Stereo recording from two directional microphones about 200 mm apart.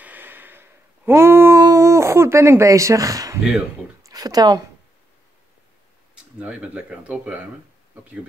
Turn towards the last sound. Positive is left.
turn(degrees=-5)  # may be behind; listen again after turning